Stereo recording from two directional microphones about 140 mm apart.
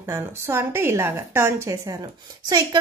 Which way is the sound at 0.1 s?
20° right (ahead or behind).